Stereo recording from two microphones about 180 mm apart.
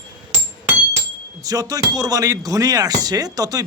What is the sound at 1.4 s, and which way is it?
Speech, 20° right (ahead or behind).